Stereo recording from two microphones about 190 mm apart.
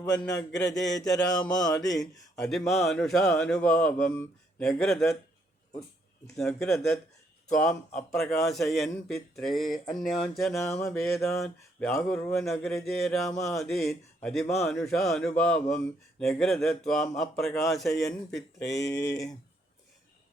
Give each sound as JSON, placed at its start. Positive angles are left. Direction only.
{"t": 0.0, "sound": "a sound", "side_deg": 20}
{"t": 0.5, "sound": "a man's voice", "side_deg": 0}
{"t": 0.9, "sound": "a sound", "side_deg": 20}
{"t": 2.3, "sound": "a man's voice", "side_deg": 0}
{"t": 6.2, "sound": "a man's voice", "side_deg": 5}
{"t": 18.9, "sound": "speech", "side_deg": 15}